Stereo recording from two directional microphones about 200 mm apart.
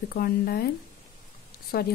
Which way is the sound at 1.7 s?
50° left (ahead or behind).